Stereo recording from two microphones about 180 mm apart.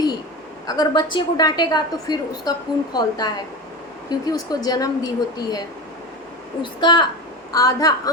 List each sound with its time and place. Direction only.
0.7 s a woman's voice: 20° left (ahead or behind)